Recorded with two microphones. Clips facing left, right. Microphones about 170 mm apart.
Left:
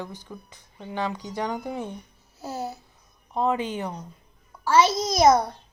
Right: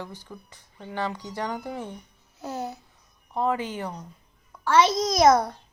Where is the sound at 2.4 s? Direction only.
5° left (ahead or behind).